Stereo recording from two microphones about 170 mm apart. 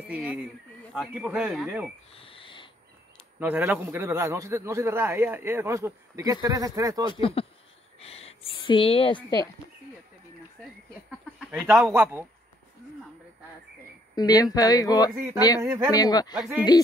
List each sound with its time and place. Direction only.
0.0 s speech: 5° right (ahead or behind)
2.1 s a sound: 30° left (ahead or behind)
3.3 s a man's voice: 10° right (ahead or behind)
7.2 s speech: 30° left (ahead or behind)
11.1 s a sound: 5° right (ahead or behind)
11.8 s a man's voice: 15° right (ahead or behind)
14.1 s speech: 20° left (ahead or behind)
15.6 s a man's voice: 10° right (ahead or behind)
15.9 s speech: 20° left (ahead or behind)